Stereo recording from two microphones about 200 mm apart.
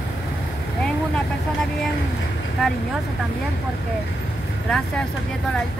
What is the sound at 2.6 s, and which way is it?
Speech, centre (ahead or behind).